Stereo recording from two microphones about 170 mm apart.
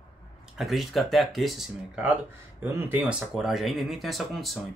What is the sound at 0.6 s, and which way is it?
Speech, centre (ahead or behind).